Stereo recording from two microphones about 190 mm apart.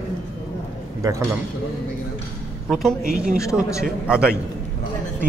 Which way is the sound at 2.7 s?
Centre (ahead or behind).